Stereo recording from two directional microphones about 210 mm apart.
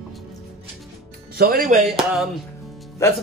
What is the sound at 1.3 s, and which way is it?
Speech, 45° right (ahead or behind).